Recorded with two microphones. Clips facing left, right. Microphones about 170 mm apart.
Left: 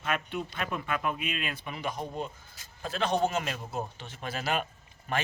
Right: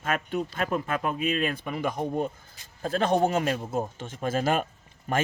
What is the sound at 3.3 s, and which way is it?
A man's voice, 40° right (ahead or behind).